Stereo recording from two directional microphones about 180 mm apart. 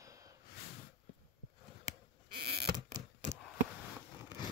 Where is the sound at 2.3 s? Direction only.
60° right (ahead or behind).